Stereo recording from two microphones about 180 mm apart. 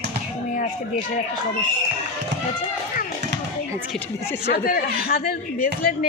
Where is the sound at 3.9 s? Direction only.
15° left (ahead or behind).